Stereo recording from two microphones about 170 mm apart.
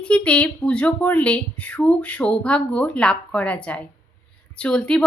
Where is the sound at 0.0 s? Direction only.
5° left (ahead or behind).